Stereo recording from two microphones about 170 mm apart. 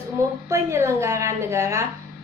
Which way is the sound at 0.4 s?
15° right (ahead or behind).